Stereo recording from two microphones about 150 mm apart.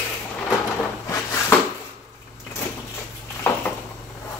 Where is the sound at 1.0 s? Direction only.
20° left (ahead or behind).